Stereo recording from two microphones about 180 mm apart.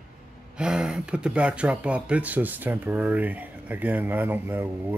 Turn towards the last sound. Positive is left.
turn(degrees=-10)  # may be behind; listen again after turning